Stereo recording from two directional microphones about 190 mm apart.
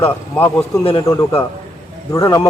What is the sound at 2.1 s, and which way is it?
Speech, 15° left (ahead or behind).